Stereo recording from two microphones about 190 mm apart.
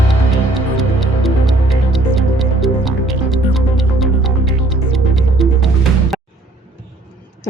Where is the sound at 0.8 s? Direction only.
Centre (ahead or behind).